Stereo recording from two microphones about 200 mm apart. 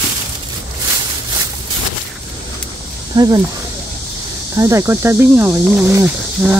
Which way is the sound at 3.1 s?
20° right (ahead or behind).